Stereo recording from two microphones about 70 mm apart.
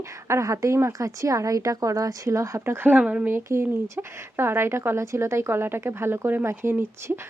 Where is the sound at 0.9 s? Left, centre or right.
Right.